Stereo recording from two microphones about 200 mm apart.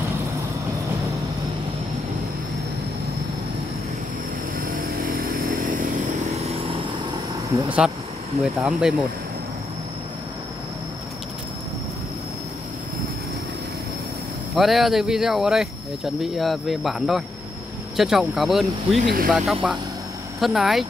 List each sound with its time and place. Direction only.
8.5 s speech: 5° right (ahead or behind)
14.5 s speech: centre (ahead or behind)
19.0 s speech: 45° right (ahead or behind)
19.3 s speech: centre (ahead or behind)